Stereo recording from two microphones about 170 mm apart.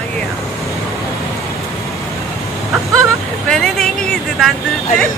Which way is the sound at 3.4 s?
5° left (ahead or behind).